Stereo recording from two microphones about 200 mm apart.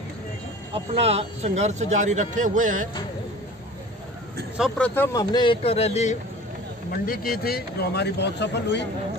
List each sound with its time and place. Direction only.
0.9 s speech: 30° right (ahead or behind)
4.6 s speech: centre (ahead or behind); by 6.1 s 35° left (ahead or behind)
6.9 s speech: 45° left (ahead or behind)